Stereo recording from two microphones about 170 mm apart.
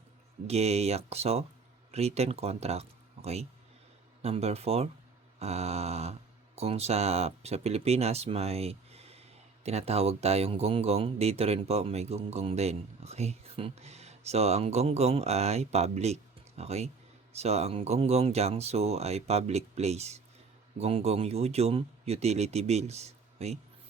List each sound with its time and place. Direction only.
0.4 s speech: 40° right (ahead or behind)